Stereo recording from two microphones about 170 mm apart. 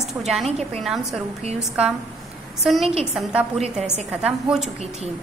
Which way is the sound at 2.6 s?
Centre (ahead or behind).